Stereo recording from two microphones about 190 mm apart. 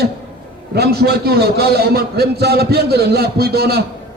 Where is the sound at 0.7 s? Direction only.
55° right (ahead or behind).